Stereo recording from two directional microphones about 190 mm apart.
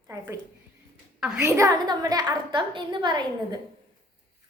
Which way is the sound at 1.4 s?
15° right (ahead or behind).